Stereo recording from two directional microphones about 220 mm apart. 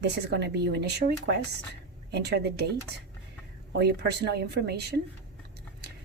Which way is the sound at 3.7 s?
50° right (ahead or behind).